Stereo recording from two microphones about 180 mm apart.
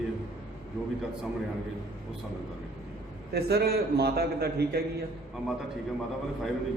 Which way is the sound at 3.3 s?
65° right (ahead or behind).